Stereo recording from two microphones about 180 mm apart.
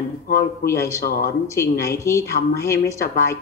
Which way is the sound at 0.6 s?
15° left (ahead or behind).